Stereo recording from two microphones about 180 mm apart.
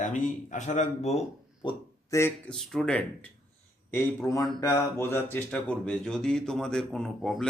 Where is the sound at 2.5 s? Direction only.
Centre (ahead or behind).